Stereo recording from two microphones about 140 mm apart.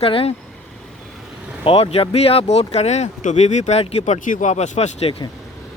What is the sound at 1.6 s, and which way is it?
Speech, 45° left (ahead or behind).